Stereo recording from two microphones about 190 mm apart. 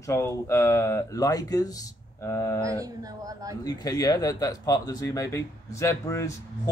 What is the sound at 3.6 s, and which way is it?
Speech, 20° left (ahead or behind).